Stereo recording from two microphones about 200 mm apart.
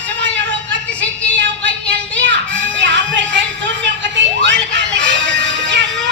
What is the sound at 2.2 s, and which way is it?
Music, 60° right (ahead or behind).